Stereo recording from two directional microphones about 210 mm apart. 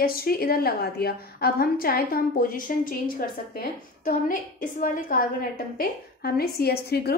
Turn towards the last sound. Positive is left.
turn(degrees=50)  # may be behind; listen again after turning